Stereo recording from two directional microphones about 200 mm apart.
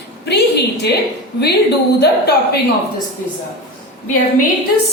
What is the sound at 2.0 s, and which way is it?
Speech, 55° left (ahead or behind).